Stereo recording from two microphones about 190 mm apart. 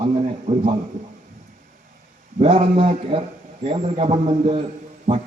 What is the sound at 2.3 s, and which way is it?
A man's voice, 30° right (ahead or behind).